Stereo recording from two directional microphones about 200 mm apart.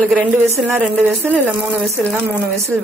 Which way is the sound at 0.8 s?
10° right (ahead or behind).